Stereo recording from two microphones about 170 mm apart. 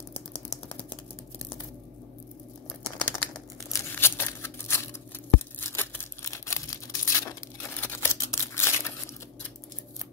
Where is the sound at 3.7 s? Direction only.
15° left (ahead or behind).